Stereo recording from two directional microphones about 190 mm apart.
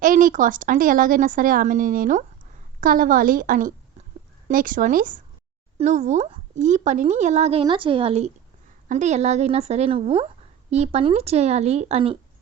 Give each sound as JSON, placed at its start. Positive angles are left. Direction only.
{"t": 0.0, "sound": "a woman's voice", "side_deg": -45}